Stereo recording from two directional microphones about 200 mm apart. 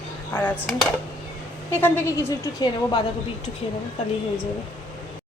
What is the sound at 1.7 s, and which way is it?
Speech, 10° left (ahead or behind).